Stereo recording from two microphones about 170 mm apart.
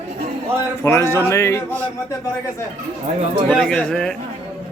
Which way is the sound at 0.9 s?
15° left (ahead or behind).